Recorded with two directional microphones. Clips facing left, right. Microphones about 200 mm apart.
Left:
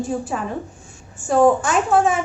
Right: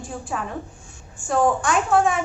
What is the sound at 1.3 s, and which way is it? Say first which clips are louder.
Speech: left 5 dB; centre (ahead or behind).